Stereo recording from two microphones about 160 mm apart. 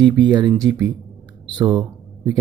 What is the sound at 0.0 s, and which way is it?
Speech, 25° right (ahead or behind).